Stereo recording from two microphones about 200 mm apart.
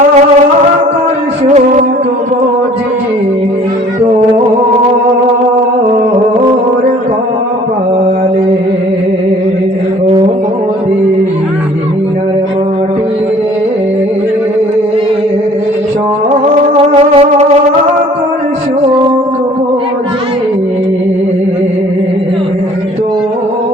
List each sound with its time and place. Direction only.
16.7 s music: 30° right (ahead or behind)
18.8 s music: 25° right (ahead or behind)